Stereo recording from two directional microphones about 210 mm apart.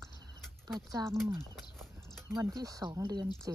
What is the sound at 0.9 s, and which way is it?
Speech, 15° right (ahead or behind).